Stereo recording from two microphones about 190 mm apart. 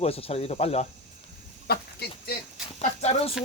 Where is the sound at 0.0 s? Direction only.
30° left (ahead or behind).